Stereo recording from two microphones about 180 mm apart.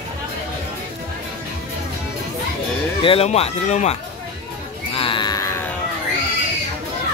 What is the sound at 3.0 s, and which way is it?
Speech, 30° left (ahead or behind).